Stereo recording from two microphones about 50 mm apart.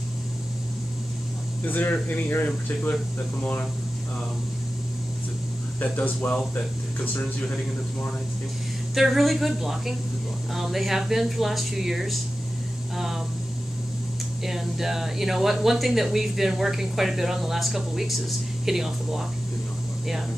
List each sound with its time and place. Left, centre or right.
1.7 s speech: left
5.8 s speech: left
8.9 s speech: centre
14.4 s speech: centre